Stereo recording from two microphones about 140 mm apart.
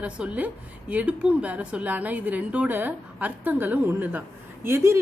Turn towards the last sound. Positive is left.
turn(degrees=-20)  # may be behind; listen again after turning